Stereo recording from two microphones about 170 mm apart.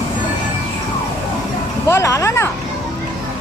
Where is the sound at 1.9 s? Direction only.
15° left (ahead or behind).